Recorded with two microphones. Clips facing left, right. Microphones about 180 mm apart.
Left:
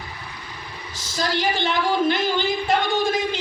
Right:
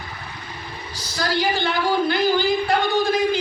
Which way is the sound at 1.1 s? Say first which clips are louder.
Right 1 dB; 20° left (ahead or behind).